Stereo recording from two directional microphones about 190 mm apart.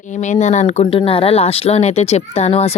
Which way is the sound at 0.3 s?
40° left (ahead or behind).